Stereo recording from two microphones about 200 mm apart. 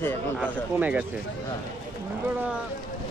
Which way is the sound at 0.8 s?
5° right (ahead or behind).